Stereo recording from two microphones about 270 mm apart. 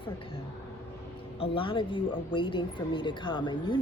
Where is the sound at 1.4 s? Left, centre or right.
Centre.